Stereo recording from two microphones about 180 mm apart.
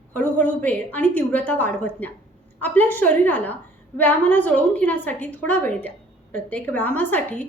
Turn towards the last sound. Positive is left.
turn(degrees=10)  # may be behind; listen again after turning